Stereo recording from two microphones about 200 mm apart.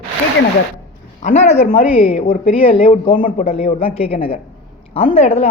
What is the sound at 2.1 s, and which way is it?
Speech, 40° left (ahead or behind).